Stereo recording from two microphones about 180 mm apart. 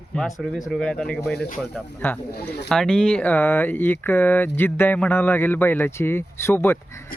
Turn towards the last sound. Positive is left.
turn(degrees=15)  # may be behind; listen again after turning